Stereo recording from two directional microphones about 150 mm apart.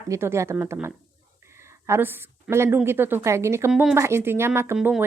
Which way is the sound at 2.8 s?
15° right (ahead or behind).